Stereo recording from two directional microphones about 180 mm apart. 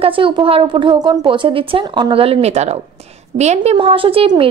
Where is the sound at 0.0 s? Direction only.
30° right (ahead or behind).